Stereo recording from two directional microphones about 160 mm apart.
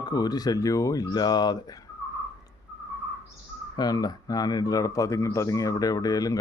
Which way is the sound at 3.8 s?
25° left (ahead or behind).